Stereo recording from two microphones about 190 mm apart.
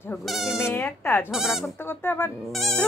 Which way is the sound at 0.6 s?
15° left (ahead or behind).